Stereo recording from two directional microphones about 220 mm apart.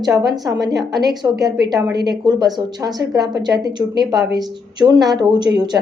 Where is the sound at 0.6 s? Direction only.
Centre (ahead or behind).